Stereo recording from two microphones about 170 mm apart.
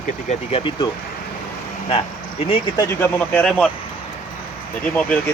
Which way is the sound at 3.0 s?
10° left (ahead or behind).